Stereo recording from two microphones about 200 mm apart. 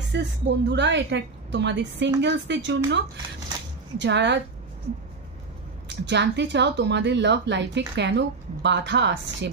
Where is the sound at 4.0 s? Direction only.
60° right (ahead or behind).